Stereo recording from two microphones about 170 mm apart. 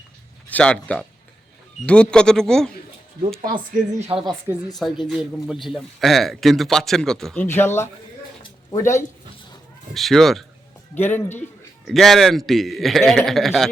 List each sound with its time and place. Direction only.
0.5 s a man's voice: 5° left (ahead or behind)
3.5 s speech: 50° right (ahead or behind)
4.1 s speech: 30° right (ahead or behind)
4.8 s a man's voice: centre (ahead or behind)
7.4 s a man's voice: 15° left (ahead or behind)
8.4 s a sound: 20° left (ahead or behind)
9.9 s a man's voice: centre (ahead or behind)
10.9 s a man's voice: 10° left (ahead or behind)
11.9 s a man's voice: centre (ahead or behind)